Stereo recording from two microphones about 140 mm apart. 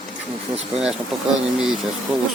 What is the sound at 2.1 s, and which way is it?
Speech, 5° right (ahead or behind).